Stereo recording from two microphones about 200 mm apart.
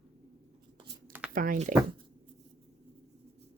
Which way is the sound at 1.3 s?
45° right (ahead or behind).